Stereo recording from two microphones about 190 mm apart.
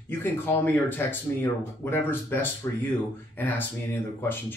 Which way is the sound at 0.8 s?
10° left (ahead or behind).